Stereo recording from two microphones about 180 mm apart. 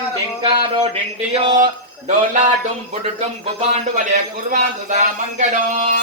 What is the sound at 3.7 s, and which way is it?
A man's voice, 45° right (ahead or behind).